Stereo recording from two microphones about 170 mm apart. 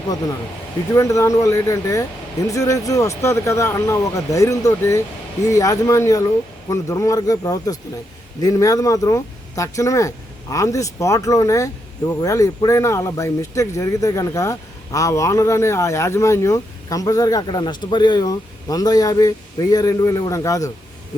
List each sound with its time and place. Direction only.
0.9 s speech: 15° left (ahead or behind)